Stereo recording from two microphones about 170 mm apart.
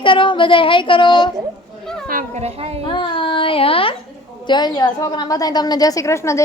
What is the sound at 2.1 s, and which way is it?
Children playing, 55° right (ahead or behind).